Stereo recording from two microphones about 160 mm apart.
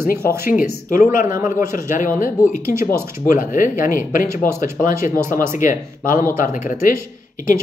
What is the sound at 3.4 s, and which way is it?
Speech, 55° left (ahead or behind).